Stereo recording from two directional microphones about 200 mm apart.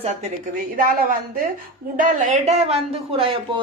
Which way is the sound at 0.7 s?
45° right (ahead or behind).